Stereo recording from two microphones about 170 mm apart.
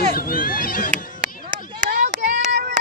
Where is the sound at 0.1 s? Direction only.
55° left (ahead or behind).